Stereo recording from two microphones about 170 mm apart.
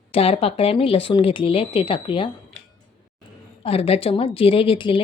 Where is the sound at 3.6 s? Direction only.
35° left (ahead or behind).